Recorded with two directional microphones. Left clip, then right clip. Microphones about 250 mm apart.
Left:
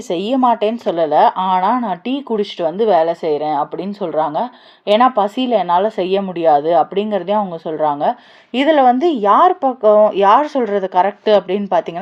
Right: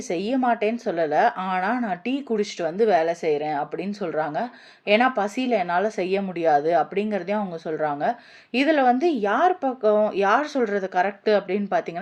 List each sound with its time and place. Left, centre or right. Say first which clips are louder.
0.1 s a woman's voice: left 8 dB; centre